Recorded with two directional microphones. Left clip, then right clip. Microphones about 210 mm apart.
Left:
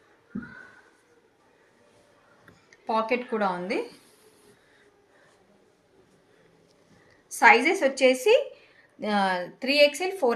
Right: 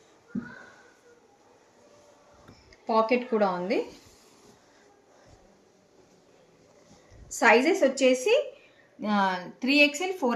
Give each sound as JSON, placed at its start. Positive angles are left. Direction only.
{"t": 2.8, "sound": "speech", "side_deg": 30}
{"t": 7.3, "sound": "speech", "side_deg": 35}